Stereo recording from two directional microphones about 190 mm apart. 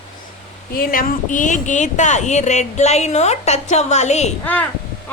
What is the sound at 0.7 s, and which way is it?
Speech, 45° left (ahead or behind).